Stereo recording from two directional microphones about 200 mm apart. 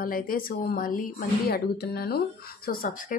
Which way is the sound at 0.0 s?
45° left (ahead or behind).